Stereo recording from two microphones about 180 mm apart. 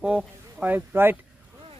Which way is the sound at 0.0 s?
5° right (ahead or behind).